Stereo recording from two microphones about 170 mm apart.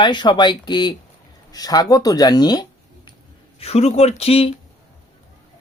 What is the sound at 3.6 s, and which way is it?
Speech, 35° left (ahead or behind).